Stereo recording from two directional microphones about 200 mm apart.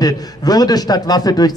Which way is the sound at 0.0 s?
20° left (ahead or behind).